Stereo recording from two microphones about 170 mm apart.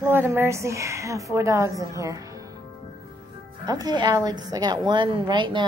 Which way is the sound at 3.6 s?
25° right (ahead or behind).